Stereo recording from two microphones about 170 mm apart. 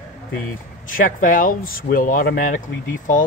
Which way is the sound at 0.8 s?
55° left (ahead or behind).